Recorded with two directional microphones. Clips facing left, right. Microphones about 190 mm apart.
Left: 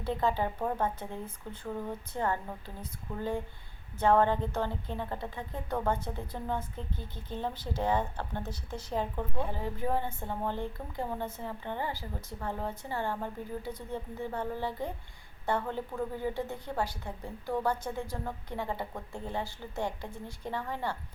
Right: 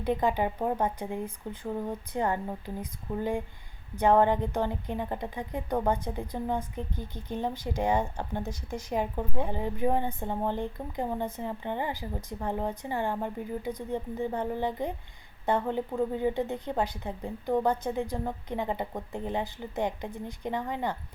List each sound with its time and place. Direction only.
0.0 s a woman's voice: 15° right (ahead or behind)